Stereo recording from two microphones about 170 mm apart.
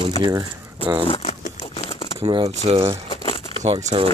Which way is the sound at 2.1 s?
35° right (ahead or behind).